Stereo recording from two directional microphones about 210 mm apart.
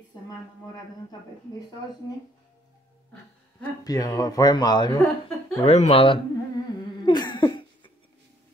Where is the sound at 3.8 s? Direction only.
15° left (ahead or behind).